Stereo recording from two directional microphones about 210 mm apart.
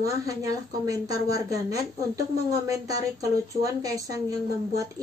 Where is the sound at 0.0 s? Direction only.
15° right (ahead or behind).